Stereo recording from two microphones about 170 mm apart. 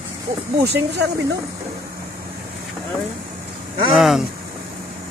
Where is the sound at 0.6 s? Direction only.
75° right (ahead or behind).